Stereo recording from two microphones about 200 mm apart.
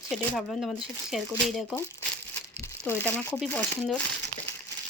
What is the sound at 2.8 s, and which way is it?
Speech, 10° left (ahead or behind).